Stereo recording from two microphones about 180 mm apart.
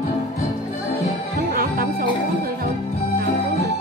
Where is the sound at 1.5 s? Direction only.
55° right (ahead or behind).